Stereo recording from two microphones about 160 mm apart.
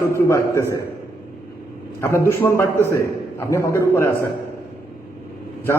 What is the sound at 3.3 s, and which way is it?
Speech, 15° left (ahead or behind).